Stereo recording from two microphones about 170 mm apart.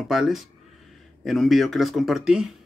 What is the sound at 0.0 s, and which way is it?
Speech, centre (ahead or behind).